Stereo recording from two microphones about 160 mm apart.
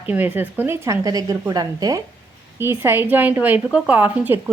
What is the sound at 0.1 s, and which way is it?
A woman's voice, 10° right (ahead or behind).